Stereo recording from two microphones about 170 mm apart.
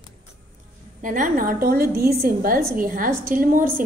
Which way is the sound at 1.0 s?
50° right (ahead or behind).